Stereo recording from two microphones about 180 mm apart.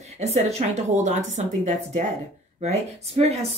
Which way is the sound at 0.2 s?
40° right (ahead or behind).